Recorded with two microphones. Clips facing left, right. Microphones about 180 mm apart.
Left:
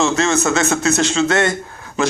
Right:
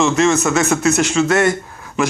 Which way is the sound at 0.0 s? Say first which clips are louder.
Right 2 dB; 30° left (ahead or behind).